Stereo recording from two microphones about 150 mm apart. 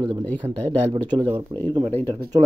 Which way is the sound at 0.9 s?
30° right (ahead or behind).